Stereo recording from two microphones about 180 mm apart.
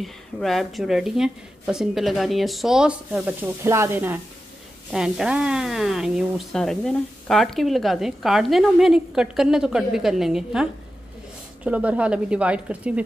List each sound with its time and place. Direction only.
0.0 s a woman's voice: centre (ahead or behind)